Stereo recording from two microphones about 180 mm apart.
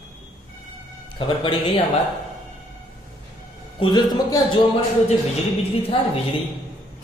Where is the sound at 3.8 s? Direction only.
25° left (ahead or behind).